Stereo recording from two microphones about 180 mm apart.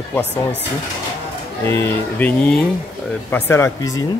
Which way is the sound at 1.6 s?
15° left (ahead or behind).